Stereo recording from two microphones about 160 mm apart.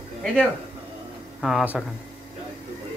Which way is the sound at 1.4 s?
5° right (ahead or behind).